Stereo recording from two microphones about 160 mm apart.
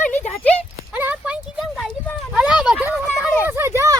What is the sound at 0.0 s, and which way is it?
Clip-clop, 10° left (ahead or behind).